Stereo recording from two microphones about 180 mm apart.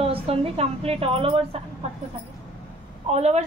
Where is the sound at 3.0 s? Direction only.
35° right (ahead or behind).